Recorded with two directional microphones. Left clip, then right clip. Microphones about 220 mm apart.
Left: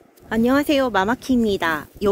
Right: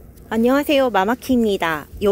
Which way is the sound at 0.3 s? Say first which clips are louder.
Right 2 dB; centre (ahead or behind).